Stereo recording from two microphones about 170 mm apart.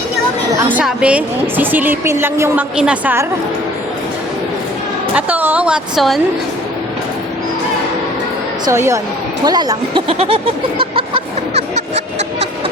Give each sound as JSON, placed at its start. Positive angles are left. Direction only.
{"t": 0.5, "sound": "a woman's voice", "side_deg": -10}
{"t": 5.1, "sound": "a woman's voice", "side_deg": -10}
{"t": 8.6, "sound": "a woman's voice", "side_deg": -15}
{"t": 9.4, "sound": "a sound", "side_deg": -25}